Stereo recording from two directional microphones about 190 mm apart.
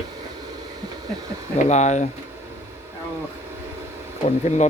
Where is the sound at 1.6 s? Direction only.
35° left (ahead or behind).